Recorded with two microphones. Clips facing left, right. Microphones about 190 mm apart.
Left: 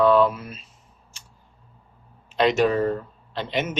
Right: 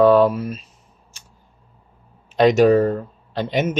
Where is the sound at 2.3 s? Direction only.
40° right (ahead or behind).